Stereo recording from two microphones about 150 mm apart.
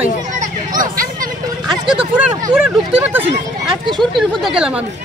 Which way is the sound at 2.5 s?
5° right (ahead or behind).